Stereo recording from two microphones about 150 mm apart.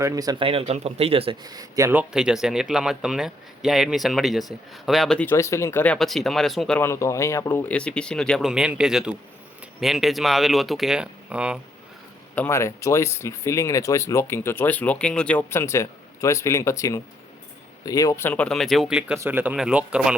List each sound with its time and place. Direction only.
0.0 s speech: 25° right (ahead or behind)
0.4 s speech: 40° right (ahead or behind)
1.5 s speech: 25° right (ahead or behind); by 5.3 s 5° left (ahead or behind)
5.3 s speech: 20° left (ahead or behind); by 6.7 s centre (ahead or behind)
6.7 s speech: 15° left (ahead or behind); by 11.6 s 5° right (ahead or behind)
12.3 s speech: 15° left (ahead or behind); by 20.1 s 5° right (ahead or behind)